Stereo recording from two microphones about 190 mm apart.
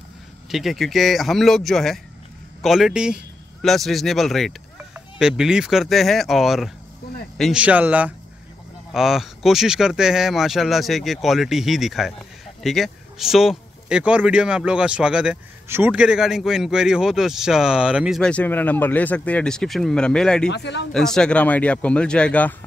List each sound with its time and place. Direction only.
0.5 s a man's voice: centre (ahead or behind)
20.4 s speech: 65° left (ahead or behind)
20.9 s speech: 5° left (ahead or behind)